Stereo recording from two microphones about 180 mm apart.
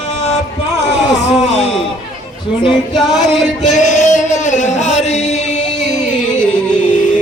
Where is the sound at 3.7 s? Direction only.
40° left (ahead or behind).